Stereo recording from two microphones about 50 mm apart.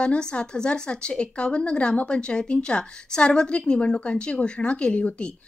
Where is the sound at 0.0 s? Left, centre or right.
Centre.